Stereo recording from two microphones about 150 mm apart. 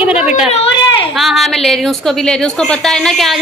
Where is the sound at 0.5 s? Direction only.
40° left (ahead or behind).